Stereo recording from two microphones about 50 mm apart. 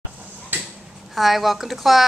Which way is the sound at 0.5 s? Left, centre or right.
Right.